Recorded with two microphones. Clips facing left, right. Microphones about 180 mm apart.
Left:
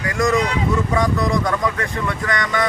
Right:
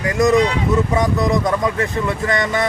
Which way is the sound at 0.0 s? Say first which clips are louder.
Right 4 dB; 20° right (ahead or behind).